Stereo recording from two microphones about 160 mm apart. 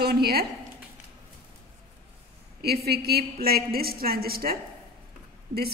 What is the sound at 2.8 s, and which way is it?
A woman's voice, 80° right.